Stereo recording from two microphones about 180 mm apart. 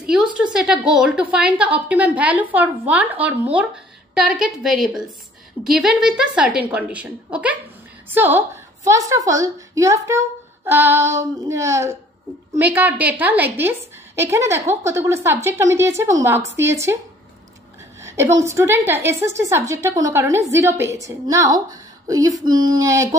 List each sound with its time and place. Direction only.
0.4 s a woman's voice: 5° right (ahead or behind)
18.0 s a woman's voice: 15° right (ahead or behind)